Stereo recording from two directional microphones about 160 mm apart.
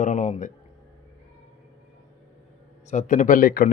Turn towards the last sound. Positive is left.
turn(degrees=65)  # may be behind; listen again after turning